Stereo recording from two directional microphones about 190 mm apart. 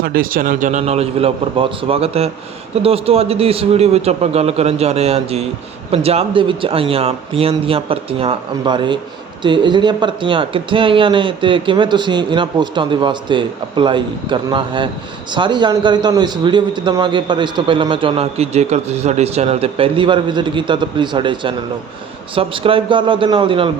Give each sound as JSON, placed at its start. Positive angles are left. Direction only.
{"t": 0.0, "sound": "a man's voice", "side_deg": -50}